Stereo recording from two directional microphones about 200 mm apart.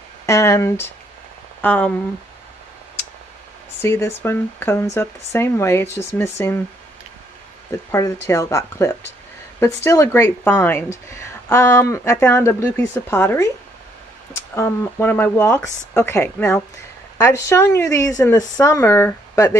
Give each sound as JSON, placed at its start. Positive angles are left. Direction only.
{"t": 0.3, "sound": "speech", "side_deg": 15}
{"t": 3.8, "sound": "speech", "side_deg": 10}
{"t": 7.9, "sound": "speech", "side_deg": 15}